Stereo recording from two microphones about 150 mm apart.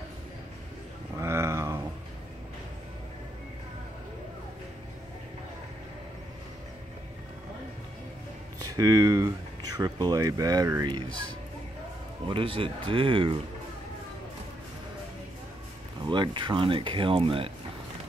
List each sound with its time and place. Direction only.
1.1 s a sound: 20° right (ahead or behind)
8.5 s speech: 25° right (ahead or behind)
12.3 s speech: 35° right (ahead or behind)
16.1 s speech: 30° right (ahead or behind)